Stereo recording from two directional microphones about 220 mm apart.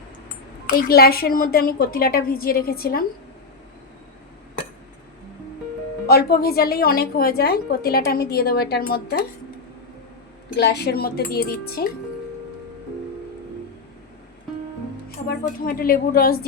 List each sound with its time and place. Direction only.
0.7 s a woman's voice: 45° left (ahead or behind)
6.1 s a woman's voice: 45° left (ahead or behind)
10.6 s a woman's voice: 45° left (ahead or behind)
15.3 s speech: 40° left (ahead or behind)